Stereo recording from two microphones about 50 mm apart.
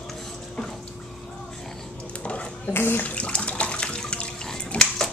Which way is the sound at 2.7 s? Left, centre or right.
Left.